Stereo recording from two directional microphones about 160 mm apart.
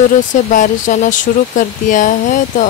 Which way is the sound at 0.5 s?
50° left (ahead or behind).